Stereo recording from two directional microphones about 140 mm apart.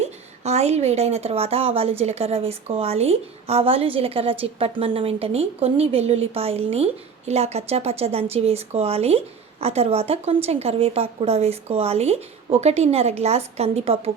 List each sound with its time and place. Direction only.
0.0 s speech: 50° right (ahead or behind)